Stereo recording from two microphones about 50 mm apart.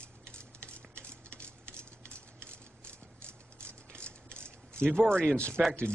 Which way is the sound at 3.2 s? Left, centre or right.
Right.